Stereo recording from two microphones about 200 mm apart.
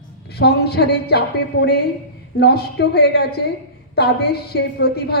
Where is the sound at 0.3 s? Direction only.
55° left (ahead or behind).